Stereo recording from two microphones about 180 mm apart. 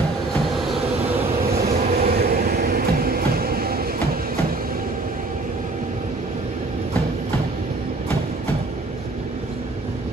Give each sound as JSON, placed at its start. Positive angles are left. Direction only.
{"t": 1.9, "sound": "train", "side_deg": -55}